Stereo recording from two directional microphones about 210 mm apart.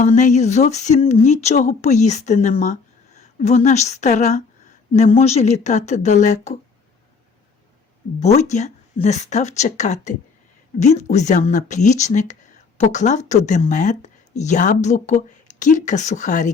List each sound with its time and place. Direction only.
0.0 s speech: 35° left (ahead or behind)
8.2 s speech: 30° left (ahead or behind)